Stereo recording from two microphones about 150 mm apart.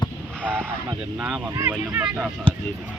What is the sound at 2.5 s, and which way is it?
Speech, 35° right (ahead or behind).